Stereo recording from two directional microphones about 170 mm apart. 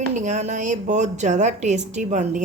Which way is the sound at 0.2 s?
45° right (ahead or behind).